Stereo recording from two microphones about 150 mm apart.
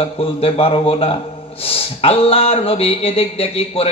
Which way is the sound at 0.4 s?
40° left (ahead or behind).